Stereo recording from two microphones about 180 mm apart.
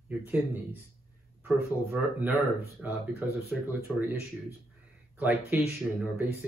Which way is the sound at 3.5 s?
10° right (ahead or behind).